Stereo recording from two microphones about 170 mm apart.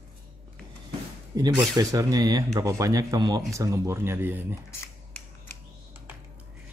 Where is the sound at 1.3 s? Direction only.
20° right (ahead or behind).